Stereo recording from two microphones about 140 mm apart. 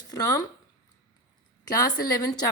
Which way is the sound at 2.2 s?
25° left (ahead or behind).